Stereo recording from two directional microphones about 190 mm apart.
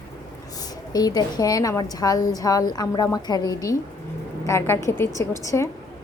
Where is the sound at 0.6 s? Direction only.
20° left (ahead or behind).